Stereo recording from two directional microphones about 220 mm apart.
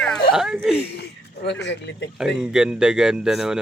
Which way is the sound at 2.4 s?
5° right (ahead or behind).